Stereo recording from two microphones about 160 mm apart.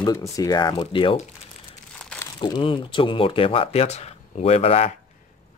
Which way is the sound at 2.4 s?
30° left (ahead or behind).